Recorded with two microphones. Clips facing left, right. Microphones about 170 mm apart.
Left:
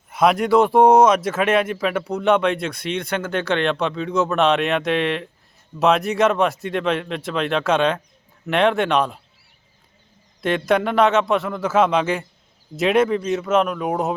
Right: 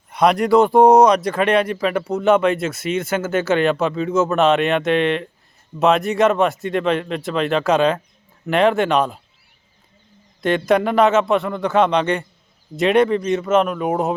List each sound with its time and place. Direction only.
0.1 s speech: centre (ahead or behind)
10.4 s speech: centre (ahead or behind)